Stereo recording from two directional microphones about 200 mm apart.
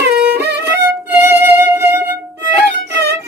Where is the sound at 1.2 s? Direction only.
10° right (ahead or behind).